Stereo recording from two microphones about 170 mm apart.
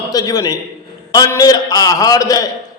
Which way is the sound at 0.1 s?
20° left (ahead or behind).